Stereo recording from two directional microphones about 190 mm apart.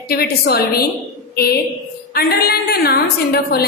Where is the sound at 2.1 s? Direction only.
55° left (ahead or behind).